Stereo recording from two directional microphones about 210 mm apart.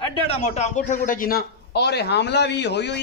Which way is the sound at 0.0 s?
30° left (ahead or behind).